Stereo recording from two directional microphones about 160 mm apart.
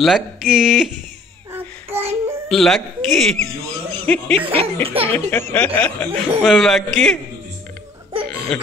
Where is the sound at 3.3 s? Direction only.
45° right (ahead or behind).